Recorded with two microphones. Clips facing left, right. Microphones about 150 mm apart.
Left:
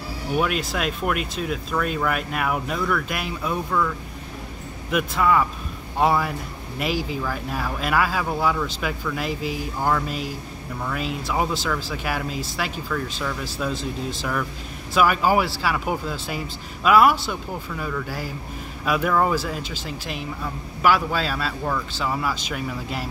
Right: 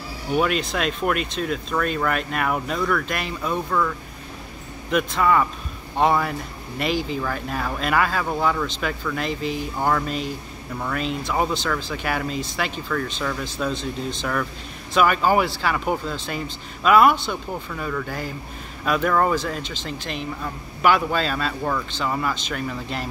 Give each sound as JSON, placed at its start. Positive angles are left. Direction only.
{"t": 0.4, "sound": "speech", "side_deg": 5}
{"t": 4.9, "sound": "speech", "side_deg": 5}